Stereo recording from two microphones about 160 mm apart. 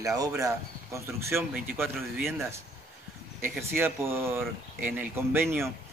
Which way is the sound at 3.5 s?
15° right (ahead or behind).